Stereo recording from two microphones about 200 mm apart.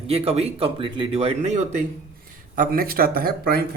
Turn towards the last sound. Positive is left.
turn(degrees=-50)  # may be behind; listen again after turning